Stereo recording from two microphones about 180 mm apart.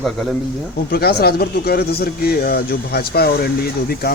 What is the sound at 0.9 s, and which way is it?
Speech, 60° left (ahead or behind).